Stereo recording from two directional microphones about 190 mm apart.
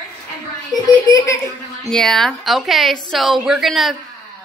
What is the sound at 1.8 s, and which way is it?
A woman's voice, 5° left (ahead or behind).